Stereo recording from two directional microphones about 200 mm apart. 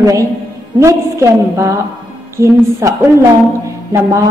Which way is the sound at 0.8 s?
15° right (ahead or behind).